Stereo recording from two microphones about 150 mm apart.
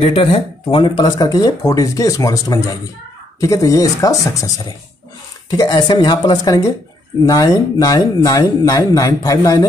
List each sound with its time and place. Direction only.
0.0 s speech: 40° left (ahead or behind); by 9.7 s 25° left (ahead or behind)